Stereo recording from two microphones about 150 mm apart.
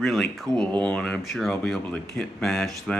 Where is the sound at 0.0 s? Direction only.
Centre (ahead or behind).